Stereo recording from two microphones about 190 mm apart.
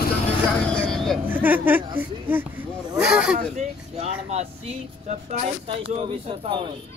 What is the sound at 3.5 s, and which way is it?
Speech, 40° right (ahead or behind).